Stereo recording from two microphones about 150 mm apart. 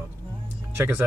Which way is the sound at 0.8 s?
15° right (ahead or behind).